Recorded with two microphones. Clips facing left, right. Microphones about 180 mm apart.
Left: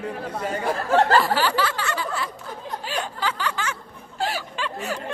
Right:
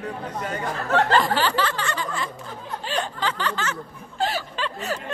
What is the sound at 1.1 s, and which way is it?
Speech, 10° left (ahead or behind).